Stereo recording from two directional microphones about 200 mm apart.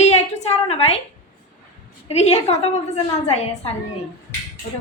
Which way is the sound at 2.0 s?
30° left (ahead or behind).